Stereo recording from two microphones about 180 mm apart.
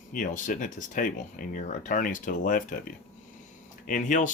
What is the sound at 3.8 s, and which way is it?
Speech, 45° left (ahead or behind).